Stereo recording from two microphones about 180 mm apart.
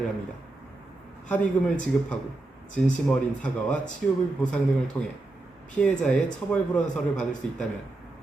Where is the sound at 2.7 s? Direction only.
5° left (ahead or behind).